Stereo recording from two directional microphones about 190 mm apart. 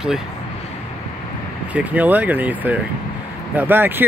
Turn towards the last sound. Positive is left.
turn(degrees=-10)  # may be behind; listen again after turning